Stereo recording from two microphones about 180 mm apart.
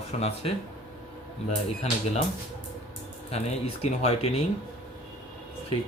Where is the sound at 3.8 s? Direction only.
35° left (ahead or behind).